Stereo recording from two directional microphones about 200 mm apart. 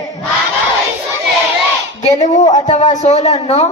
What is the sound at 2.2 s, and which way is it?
Speech, 35° left (ahead or behind).